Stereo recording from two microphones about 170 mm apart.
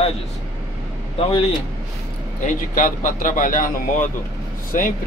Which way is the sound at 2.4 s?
55° left (ahead or behind).